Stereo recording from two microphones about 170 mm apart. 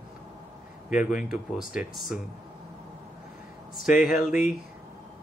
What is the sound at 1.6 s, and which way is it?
Speech, 55° left (ahead or behind).